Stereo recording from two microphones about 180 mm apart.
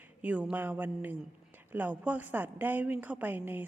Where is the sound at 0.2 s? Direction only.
5° right (ahead or behind).